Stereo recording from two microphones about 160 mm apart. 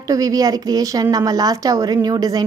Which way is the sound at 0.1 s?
20° right (ahead or behind).